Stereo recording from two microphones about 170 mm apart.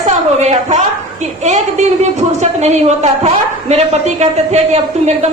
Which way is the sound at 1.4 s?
40° right (ahead or behind).